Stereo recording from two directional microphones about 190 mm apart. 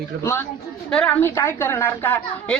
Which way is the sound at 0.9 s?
5° left (ahead or behind).